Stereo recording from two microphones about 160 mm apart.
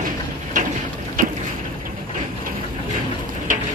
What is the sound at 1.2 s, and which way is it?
Boat, 55° right (ahead or behind).